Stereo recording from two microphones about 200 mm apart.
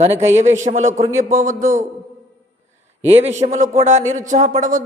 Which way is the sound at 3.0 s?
30° right (ahead or behind).